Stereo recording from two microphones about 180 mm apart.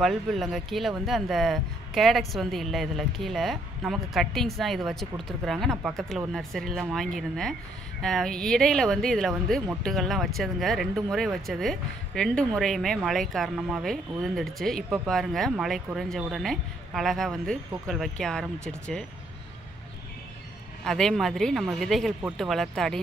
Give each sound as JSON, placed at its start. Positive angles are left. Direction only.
{"t": 0.0, "sound": "speech", "side_deg": 0}
{"t": 20.8, "sound": "speech", "side_deg": 5}